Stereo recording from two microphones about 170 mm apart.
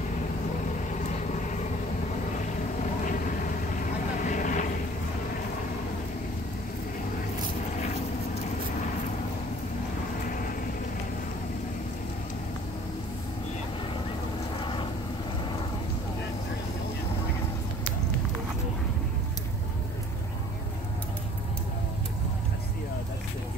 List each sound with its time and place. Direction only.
2.8 s vehicle: 50° left (ahead or behind)
7.7 s vehicle: 45° left (ahead or behind)